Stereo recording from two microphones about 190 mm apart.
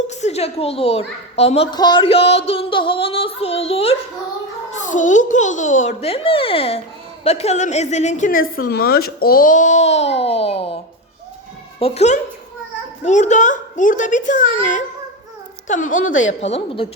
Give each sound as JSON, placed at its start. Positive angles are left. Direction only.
{"t": 0.1, "sound": "a child's voice", "side_deg": 35}
{"t": 1.7, "sound": "a sound", "side_deg": 20}
{"t": 4.7, "sound": "a child's voice", "side_deg": 40}
{"t": 8.6, "sound": "a child's voice", "side_deg": 55}
{"t": 11.8, "sound": "a child's voice", "side_deg": 35}
{"t": 16.4, "sound": "a child's voice", "side_deg": 30}